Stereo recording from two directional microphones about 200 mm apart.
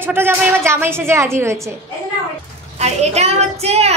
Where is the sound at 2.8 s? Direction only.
35° right (ahead or behind).